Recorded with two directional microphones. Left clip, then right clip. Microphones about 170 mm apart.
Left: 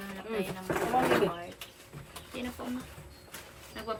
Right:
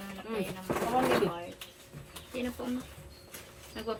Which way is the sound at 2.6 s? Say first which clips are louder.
Right 2 dB; 5° left (ahead or behind).